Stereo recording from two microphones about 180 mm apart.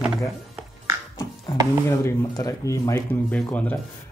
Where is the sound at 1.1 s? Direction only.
20° left (ahead or behind).